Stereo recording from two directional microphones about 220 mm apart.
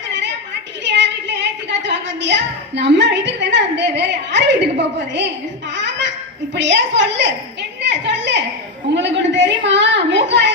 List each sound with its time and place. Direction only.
0.9 s child singing: 55° right (ahead or behind)
1.9 s a woman's voice: 55° right (ahead or behind)
5.7 s baby laughter: 55° right (ahead or behind)
6.5 s a woman's voice: 55° right (ahead or behind)
7.8 s a sound: 55° right (ahead or behind)
9.0 s a woman's voice: 55° right (ahead or behind)